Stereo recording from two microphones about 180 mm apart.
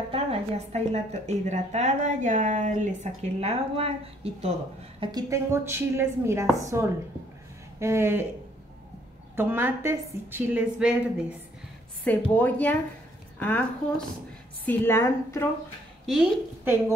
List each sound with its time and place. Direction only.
0.1 s a woman's voice: 35° right (ahead or behind)
5.0 s a woman's voice: 20° right (ahead or behind)
9.3 s a woman's voice: 15° right (ahead or behind)
12.1 s a woman's voice: 10° left (ahead or behind)
16.1 s a woman's voice: 10° right (ahead or behind)